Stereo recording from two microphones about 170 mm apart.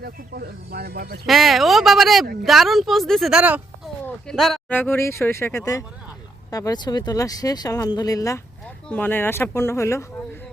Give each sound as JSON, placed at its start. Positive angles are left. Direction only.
{"t": 0.0, "sound": "speech", "side_deg": -65}
{"t": 1.3, "sound": "a woman's voice", "side_deg": 0}
{"t": 4.0, "sound": "a sound", "side_deg": 5}
{"t": 4.8, "sound": "speech", "side_deg": 15}
{"t": 8.6, "sound": "speech", "side_deg": 10}